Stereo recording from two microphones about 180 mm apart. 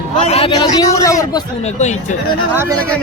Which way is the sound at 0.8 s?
20° left (ahead or behind).